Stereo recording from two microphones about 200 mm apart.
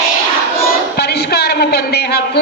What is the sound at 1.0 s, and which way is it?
A man's voice, 50° left (ahead or behind).